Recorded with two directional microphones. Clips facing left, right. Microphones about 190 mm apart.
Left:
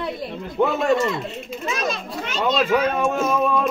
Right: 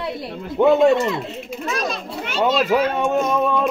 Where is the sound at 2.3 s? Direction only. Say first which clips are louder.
Right 2 dB; 10° right (ahead or behind).